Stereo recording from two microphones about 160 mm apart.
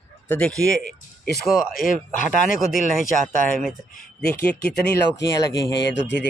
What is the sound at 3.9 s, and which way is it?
Speech, 65° left (ahead or behind).